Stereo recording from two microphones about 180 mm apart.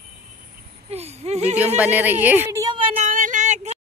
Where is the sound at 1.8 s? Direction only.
10° right (ahead or behind).